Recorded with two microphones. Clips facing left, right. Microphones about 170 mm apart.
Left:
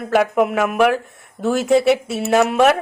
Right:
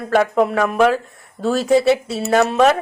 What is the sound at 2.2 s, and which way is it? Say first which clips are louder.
Speech: even; 5° left (ahead or behind).